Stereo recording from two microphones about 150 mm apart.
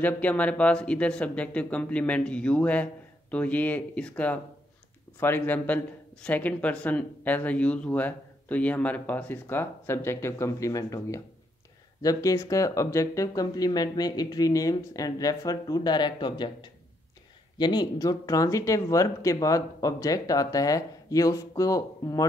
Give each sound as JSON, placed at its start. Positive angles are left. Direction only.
{"t": 0.0, "sound": "speech", "side_deg": 10}